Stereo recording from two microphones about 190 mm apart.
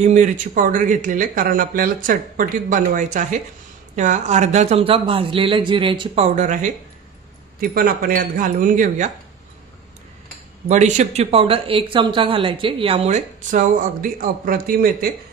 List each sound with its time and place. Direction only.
0.0 s speech: 40° right (ahead or behind)
7.7 s speech: 50° right (ahead or behind)
10.7 s speech: 40° right (ahead or behind)